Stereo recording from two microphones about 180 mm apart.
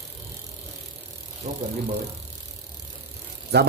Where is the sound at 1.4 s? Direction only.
45° right (ahead or behind).